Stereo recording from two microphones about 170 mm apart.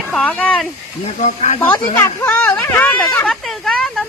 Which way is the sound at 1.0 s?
45° left (ahead or behind).